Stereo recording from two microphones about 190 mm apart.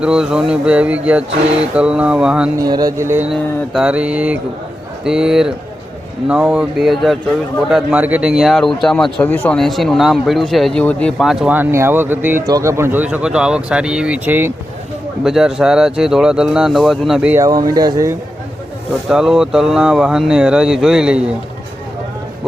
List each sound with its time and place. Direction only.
0.0 s a man's voice: 5° right (ahead or behind)
2.6 s a man's voice: 20° right (ahead or behind)
19.0 s a man's voice: centre (ahead or behind)